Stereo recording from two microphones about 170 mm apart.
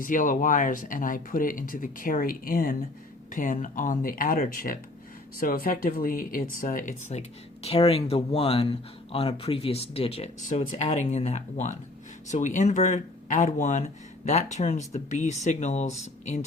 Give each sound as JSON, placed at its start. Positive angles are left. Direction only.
{"t": 0.0, "sound": "speech", "side_deg": 50}